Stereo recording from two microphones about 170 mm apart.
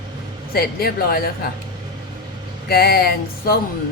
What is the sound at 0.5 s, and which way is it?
Speech, 65° left (ahead or behind).